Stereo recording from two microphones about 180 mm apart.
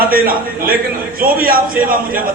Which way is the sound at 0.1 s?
55° right (ahead or behind).